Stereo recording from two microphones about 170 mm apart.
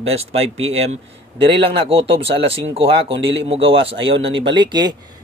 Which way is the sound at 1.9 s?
35° right (ahead or behind).